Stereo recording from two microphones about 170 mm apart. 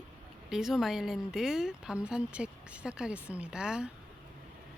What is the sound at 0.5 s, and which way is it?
Speech, centre (ahead or behind).